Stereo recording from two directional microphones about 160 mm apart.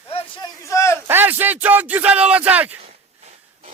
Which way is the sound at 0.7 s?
20° left (ahead or behind).